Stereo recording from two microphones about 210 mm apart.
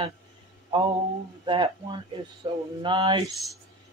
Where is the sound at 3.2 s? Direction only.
Centre (ahead or behind).